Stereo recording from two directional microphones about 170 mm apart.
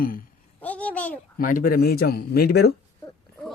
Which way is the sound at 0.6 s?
10° left (ahead or behind).